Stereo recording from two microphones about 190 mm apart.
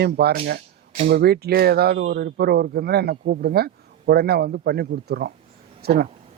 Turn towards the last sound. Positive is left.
turn(degrees=-55)  # may be behind; listen again after turning